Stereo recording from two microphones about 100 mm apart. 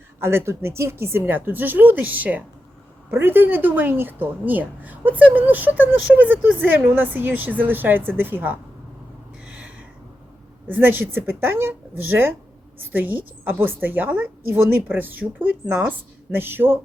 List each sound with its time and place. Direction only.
0.2 s a woman's voice: 25° right (ahead or behind)
9.4 s a sound: 10° right (ahead or behind)
10.7 s a woman's voice: 20° right (ahead or behind)